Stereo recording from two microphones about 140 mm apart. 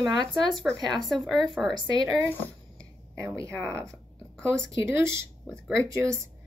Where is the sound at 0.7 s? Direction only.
10° right (ahead or behind).